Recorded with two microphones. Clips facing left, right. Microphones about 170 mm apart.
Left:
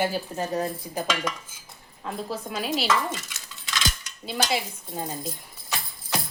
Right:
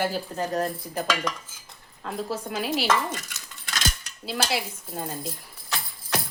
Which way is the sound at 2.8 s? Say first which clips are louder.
Right 1 dB; 50° right (ahead or behind).